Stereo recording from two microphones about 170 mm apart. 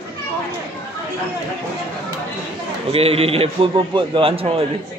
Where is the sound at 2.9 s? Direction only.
35° right (ahead or behind).